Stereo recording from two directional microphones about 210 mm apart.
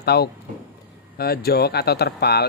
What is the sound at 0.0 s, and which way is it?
Speech, 50° left (ahead or behind).